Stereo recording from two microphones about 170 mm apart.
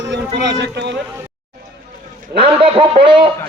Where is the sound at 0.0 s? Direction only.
90° right.